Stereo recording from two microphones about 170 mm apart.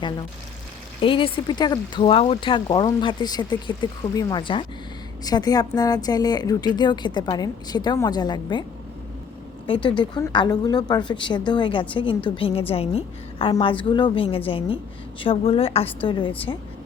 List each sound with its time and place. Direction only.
1.0 s a woman's voice: 30° left (ahead or behind)
9.6 s a woman's voice: 30° left (ahead or behind)